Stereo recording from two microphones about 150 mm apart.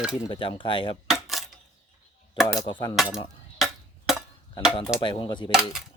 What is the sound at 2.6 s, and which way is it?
Speech, 30° left (ahead or behind).